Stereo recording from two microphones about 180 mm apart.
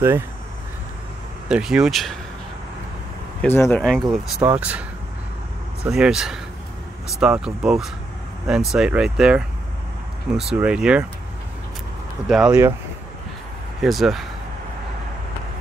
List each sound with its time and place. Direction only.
1.5 s speech: 5° right (ahead or behind)
3.4 s speech: 10° left (ahead or behind)
3.8 s speech: centre (ahead or behind)
5.9 s speech: centre (ahead or behind)
12.3 s speech: 5° right (ahead or behind)
13.7 s speech: centre (ahead or behind)